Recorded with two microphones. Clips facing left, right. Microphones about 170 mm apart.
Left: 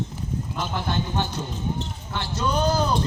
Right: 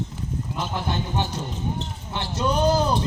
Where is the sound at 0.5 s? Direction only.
15° right (ahead or behind).